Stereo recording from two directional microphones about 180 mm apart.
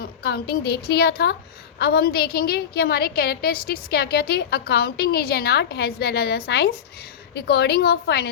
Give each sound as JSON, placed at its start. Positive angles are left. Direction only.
{"t": 0.0, "sound": "a woman's voice", "side_deg": 60}